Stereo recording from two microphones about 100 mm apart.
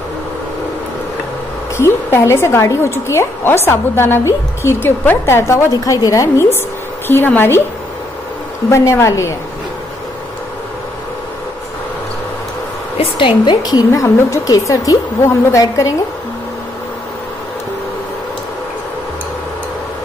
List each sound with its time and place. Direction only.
1.8 s a woman's voice: 25° left (ahead or behind)
8.6 s a woman's voice: 25° left (ahead or behind)
12.9 s a woman's voice: 80° left
13.5 s speech: 40° left (ahead or behind)